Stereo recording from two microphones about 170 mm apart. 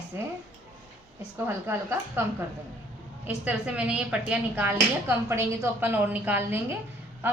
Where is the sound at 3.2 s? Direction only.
10° right (ahead or behind).